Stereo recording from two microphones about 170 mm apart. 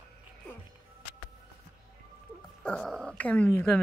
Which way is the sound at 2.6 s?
5° left (ahead or behind).